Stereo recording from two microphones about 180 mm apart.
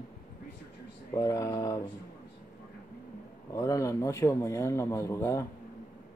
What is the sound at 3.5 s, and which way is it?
A man's voice, 20° left (ahead or behind).